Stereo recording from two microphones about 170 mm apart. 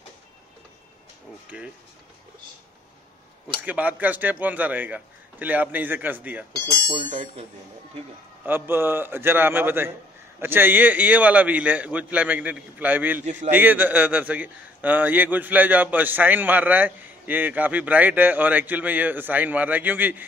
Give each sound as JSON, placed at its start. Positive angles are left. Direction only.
{"t": 3.6, "sound": "a man's voice", "side_deg": -10}
{"t": 6.5, "sound": "speech", "side_deg": -25}
{"t": 8.5, "sound": "a man's voice", "side_deg": -15}
{"t": 13.2, "sound": "a man's voice", "side_deg": -45}
{"t": 13.5, "sound": "a man's voice", "side_deg": -10}